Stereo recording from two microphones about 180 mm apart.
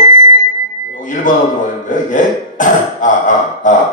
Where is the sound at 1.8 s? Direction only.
45° left (ahead or behind).